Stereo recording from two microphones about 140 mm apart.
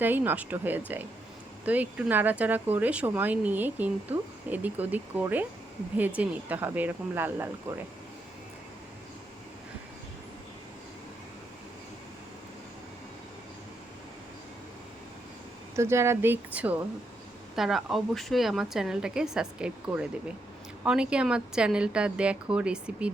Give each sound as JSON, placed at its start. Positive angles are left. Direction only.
{"t": 0.0, "sound": "speech", "side_deg": -15}
{"t": 15.7, "sound": "speech", "side_deg": -20}
{"t": 17.5, "sound": "a woman's voice", "side_deg": 0}